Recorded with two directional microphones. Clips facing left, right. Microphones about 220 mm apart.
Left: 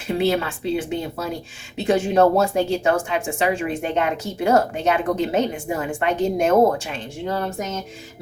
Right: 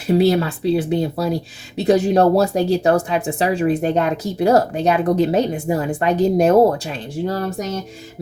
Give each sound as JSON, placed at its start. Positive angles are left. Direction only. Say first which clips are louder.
{"t": 0.1, "sound": "speech", "louder": "right 5 dB", "side_deg": -40}